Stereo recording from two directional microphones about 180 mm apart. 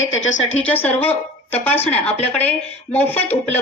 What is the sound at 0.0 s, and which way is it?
Speech, 90° left.